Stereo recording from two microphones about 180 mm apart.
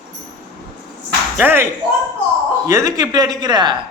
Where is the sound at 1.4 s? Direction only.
10° right (ahead or behind).